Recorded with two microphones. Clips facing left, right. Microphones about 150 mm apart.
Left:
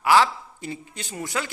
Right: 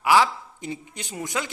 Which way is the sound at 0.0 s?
15° right (ahead or behind).